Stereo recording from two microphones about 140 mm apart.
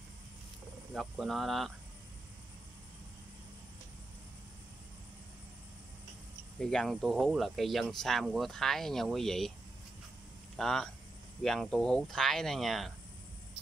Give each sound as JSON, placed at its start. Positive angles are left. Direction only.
{"t": 0.9, "sound": "speech", "side_deg": 0}
{"t": 6.6, "sound": "speech", "side_deg": 5}
{"t": 10.5, "sound": "speech", "side_deg": 5}